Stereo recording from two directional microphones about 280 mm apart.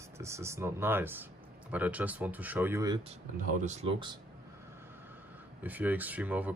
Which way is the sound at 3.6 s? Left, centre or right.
Right.